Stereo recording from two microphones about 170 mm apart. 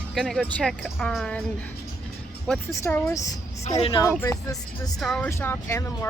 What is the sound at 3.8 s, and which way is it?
Speech, 30° left (ahead or behind).